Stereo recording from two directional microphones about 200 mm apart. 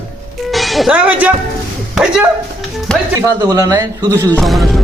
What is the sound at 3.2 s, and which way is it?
Speech, 15° right (ahead or behind).